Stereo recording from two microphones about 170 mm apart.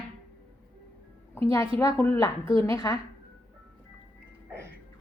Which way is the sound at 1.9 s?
15° left (ahead or behind).